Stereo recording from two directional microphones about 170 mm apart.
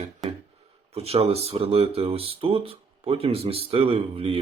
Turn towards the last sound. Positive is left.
turn(degrees=-35)  # may be behind; listen again after turning